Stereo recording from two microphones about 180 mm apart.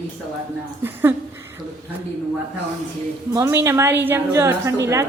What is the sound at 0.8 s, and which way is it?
Speech, 10° right (ahead or behind).